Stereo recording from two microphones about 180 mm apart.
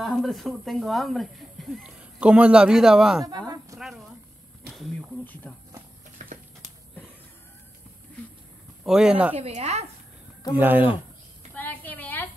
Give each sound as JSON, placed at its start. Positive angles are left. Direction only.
{"t": 0.0, "sound": "speech", "side_deg": 0}
{"t": 3.3, "sound": "speech", "side_deg": -20}
{"t": 4.6, "sound": "speech", "side_deg": 0}
{"t": 6.2, "sound": "a sound", "side_deg": -45}
{"t": 8.8, "sound": "speech", "side_deg": -5}
{"t": 9.4, "sound": "a woman's voice", "side_deg": -35}
{"t": 10.5, "sound": "speech", "side_deg": -10}
{"t": 11.5, "sound": "a sound", "side_deg": 10}